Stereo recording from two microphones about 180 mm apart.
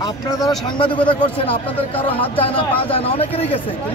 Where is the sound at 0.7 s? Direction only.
25° left (ahead or behind).